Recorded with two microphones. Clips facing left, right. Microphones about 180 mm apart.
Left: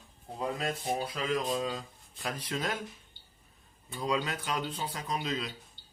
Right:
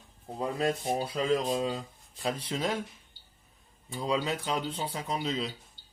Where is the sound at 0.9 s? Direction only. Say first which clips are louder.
Right 4 dB; 30° right (ahead or behind).